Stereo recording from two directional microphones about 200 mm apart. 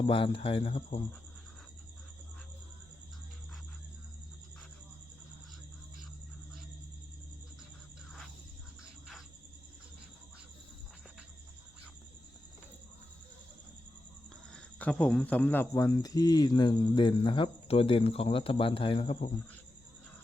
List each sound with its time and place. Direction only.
0.0 s speech: 25° left (ahead or behind)
14.5 s speech: 5° left (ahead or behind); by 19.3 s 30° left (ahead or behind)